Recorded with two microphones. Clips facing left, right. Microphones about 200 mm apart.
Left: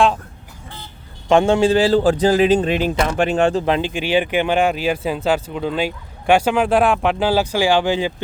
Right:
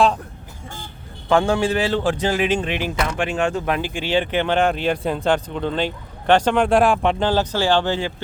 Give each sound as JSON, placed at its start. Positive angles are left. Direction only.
{"t": 1.3, "sound": "speech", "side_deg": 25}
{"t": 3.8, "sound": "speech", "side_deg": 20}